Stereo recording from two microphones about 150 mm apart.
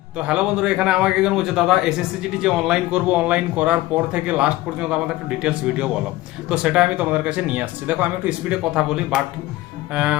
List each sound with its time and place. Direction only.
0.2 s a man's voice: 5° right (ahead or behind)